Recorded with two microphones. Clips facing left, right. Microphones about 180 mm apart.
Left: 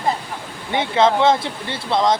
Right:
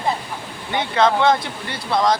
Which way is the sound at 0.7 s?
25° left (ahead or behind).